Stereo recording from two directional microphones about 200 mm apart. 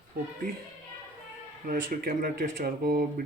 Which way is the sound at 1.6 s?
45° right (ahead or behind).